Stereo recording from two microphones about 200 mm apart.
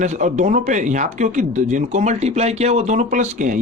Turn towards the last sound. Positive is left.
turn(degrees=-40)  # may be behind; listen again after turning